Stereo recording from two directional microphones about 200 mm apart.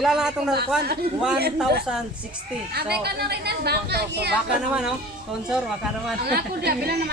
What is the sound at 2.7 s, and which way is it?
A woman's voice, 55° right (ahead or behind).